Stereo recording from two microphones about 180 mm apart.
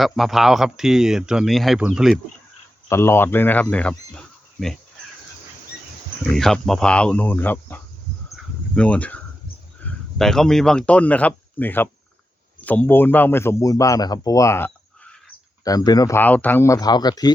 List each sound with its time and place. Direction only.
0.0 s speech: centre (ahead or behind)
2.9 s speech: 15° left (ahead or behind)
6.3 s speech: centre (ahead or behind); by 17.3 s 20° left (ahead or behind)